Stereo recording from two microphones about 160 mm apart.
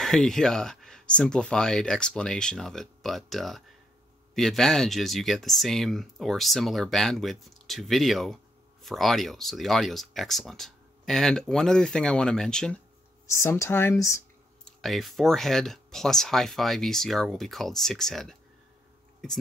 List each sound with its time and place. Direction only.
0.0 s speech: 5° left (ahead or behind)
13.3 s speech: 20° left (ahead or behind)
14.6 s speech: centre (ahead or behind)